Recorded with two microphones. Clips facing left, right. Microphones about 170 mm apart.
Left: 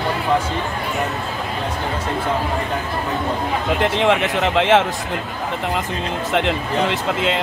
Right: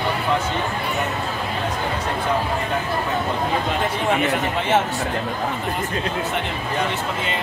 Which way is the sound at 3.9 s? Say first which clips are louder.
Left 3 dB; 85° left.